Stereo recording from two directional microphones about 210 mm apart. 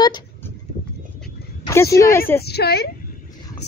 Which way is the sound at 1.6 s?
15° left (ahead or behind).